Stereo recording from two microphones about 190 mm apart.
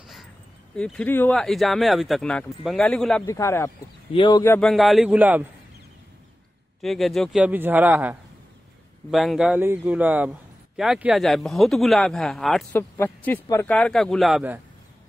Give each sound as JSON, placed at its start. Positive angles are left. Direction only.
{"t": 0.7, "sound": "speech", "side_deg": 5}
{"t": 3.3, "sound": "speech", "side_deg": 15}
{"t": 4.1, "sound": "speech", "side_deg": 25}
{"t": 4.4, "sound": "speech", "side_deg": 10}
{"t": 6.8, "sound": "a man's voice", "side_deg": 0}